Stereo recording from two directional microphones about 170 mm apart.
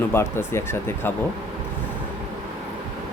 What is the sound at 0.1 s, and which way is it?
Speech, 15° left (ahead or behind).